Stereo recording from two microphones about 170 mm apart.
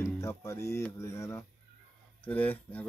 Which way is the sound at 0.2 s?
15° left (ahead or behind).